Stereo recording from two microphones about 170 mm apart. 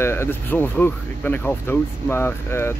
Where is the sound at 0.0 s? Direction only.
15° left (ahead or behind).